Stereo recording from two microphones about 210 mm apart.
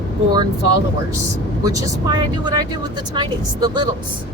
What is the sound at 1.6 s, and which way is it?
Speech, 15° right (ahead or behind).